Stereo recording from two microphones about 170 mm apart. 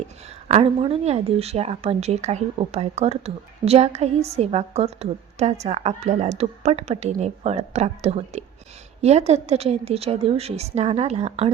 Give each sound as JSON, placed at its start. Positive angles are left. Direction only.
{"t": 0.4, "sound": "speech", "side_deg": -35}